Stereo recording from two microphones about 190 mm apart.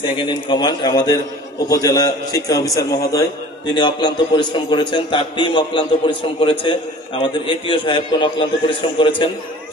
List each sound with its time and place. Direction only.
0.2 s a man's voice: 25° left (ahead or behind)